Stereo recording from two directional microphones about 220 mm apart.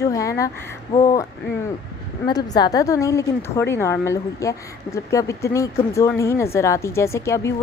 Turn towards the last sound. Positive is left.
turn(degrees=15)  # may be behind; listen again after turning